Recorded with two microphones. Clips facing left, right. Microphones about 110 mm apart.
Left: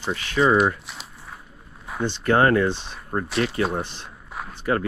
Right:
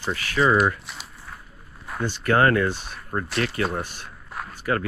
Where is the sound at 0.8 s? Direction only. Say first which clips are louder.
Even; centre (ahead or behind).